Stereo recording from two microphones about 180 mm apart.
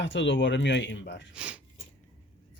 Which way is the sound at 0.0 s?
90° left.